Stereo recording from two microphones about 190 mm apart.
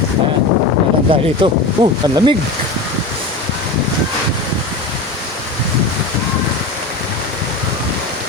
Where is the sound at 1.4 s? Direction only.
25° right (ahead or behind).